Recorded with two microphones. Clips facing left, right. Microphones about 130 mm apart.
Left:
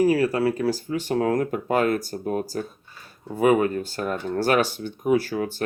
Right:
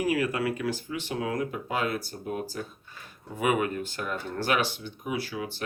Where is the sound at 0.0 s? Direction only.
35° left (ahead or behind).